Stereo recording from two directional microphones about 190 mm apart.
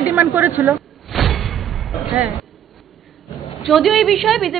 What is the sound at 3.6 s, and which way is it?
Speech, centre (ahead or behind).